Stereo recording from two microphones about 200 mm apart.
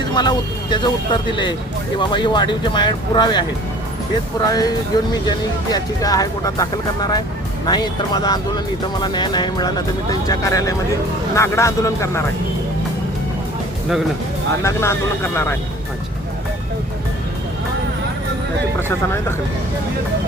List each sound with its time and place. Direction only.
0.1 s speech: 20° left (ahead or behind)
4.4 s speech: 20° left (ahead or behind)
14.6 s speech: 15° left (ahead or behind)
18.8 s speech: 10° left (ahead or behind)